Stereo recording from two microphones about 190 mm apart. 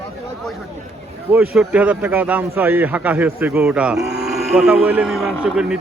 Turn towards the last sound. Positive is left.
turn(degrees=-5)  # may be behind; listen again after turning